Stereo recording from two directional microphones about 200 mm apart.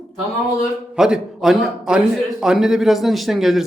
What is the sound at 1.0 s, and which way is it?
A man's voice, 5° right (ahead or behind).